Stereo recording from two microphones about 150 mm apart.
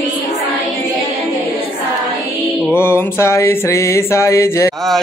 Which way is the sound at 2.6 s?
15° left (ahead or behind).